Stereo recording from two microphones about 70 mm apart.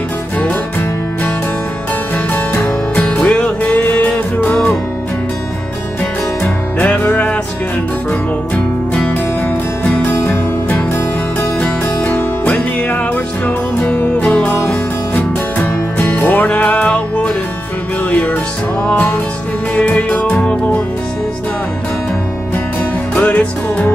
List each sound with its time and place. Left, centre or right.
2.3 s music: left
6.4 s music: left
11.6 s music: centre
13.8 s music: centre
19.7 s music: left
23.1 s music: left